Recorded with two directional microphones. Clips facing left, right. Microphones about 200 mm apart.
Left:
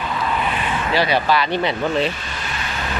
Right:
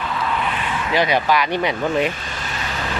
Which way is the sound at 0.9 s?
15° right (ahead or behind).